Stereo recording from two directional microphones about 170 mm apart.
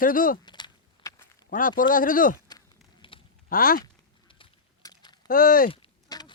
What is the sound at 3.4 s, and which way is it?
Speech, 60° left (ahead or behind).